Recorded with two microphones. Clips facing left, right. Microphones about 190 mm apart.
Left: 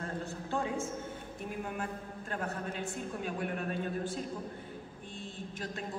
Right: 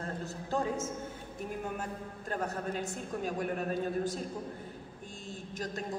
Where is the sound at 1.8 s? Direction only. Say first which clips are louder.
Left 1 dB; 40° right (ahead or behind).